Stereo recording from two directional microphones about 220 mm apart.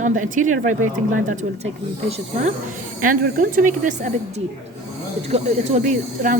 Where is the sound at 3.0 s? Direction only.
40° right (ahead or behind).